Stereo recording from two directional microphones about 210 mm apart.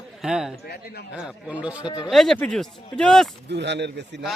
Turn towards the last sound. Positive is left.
turn(degrees=-55)  # may be behind; listen again after turning